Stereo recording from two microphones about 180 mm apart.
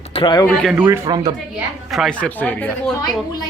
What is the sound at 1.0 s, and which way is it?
Speech, 25° right (ahead or behind).